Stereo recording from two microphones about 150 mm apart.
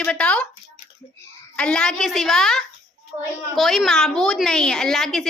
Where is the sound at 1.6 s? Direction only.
5° left (ahead or behind).